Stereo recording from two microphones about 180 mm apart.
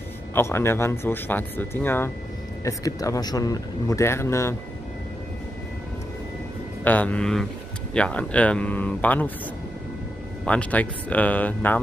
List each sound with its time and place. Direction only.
0.3 s speech: 15° left (ahead or behind)
6.8 s speech: 10° left (ahead or behind)
10.4 s speech: 5° left (ahead or behind)